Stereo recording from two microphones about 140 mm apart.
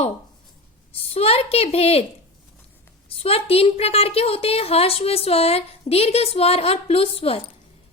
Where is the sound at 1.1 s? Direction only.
45° left (ahead or behind).